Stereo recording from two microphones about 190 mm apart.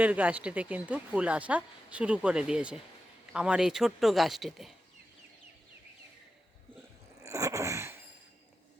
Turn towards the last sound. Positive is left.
turn(degrees=-15)  # may be behind; listen again after turning